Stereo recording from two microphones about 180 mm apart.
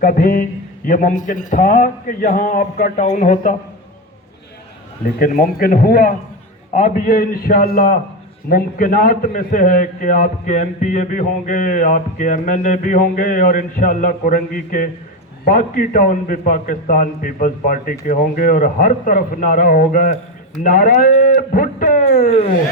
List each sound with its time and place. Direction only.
0.0 s a man's voice: 50° left (ahead or behind)
5.2 s a man's voice: 50° left (ahead or behind)